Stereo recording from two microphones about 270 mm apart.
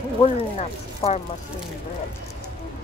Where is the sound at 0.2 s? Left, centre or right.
Left.